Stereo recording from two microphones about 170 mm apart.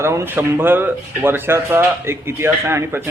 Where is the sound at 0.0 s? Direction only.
15° right (ahead or behind).